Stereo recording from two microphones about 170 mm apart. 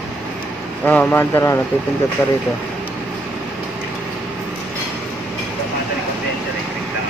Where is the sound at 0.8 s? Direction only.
10° left (ahead or behind).